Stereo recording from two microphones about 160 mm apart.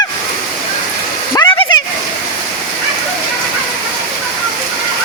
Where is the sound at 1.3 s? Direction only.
25° left (ahead or behind).